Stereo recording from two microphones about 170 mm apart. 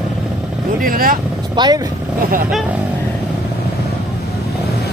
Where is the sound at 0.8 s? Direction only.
55° right (ahead or behind).